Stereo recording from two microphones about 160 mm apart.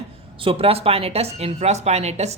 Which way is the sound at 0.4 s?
35° right (ahead or behind).